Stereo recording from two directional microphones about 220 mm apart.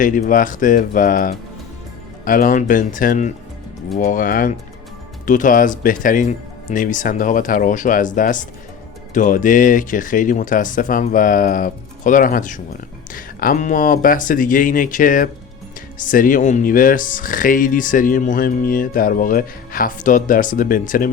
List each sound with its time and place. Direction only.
0.0 s speech: 40° left (ahead or behind)